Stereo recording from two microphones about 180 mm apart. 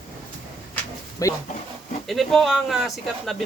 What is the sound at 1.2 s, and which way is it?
Speech, 20° left (ahead or behind).